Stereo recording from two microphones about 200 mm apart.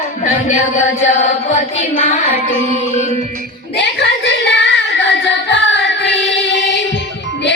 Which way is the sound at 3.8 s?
60° left (ahead or behind).